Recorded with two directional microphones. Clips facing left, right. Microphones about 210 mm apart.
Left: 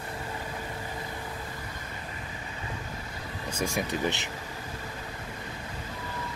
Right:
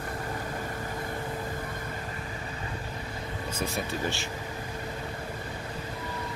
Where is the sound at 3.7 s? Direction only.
20° left (ahead or behind).